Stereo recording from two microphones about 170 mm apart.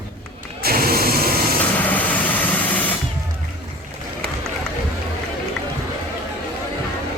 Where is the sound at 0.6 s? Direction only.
60° right (ahead or behind).